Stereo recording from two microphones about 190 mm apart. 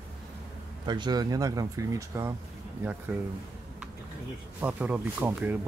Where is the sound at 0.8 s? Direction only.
20° right (ahead or behind).